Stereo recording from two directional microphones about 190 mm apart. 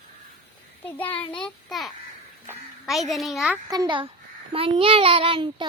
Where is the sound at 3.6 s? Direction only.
20° right (ahead or behind).